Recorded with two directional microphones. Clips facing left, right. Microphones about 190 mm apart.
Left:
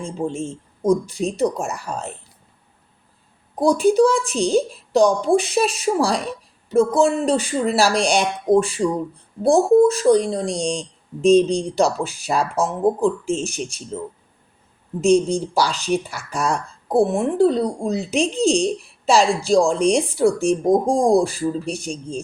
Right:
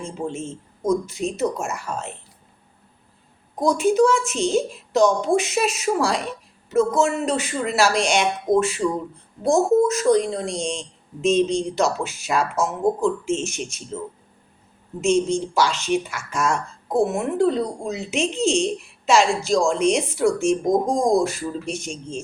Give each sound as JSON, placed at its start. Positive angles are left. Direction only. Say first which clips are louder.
{"t": 0.2, "sound": "speech", "louder": "left 4 dB", "side_deg": 15}
{"t": 0.8, "sound": "speech", "louder": "left 3 dB", "side_deg": 35}
{"t": 1.9, "sound": "speech", "louder": "left 1 dB", "side_deg": 15}
{"t": 3.6, "sound": "speech", "louder": "left 3 dB", "side_deg": 35}
{"t": 15.0, "sound": "speech", "louder": "left 3 dB", "side_deg": 35}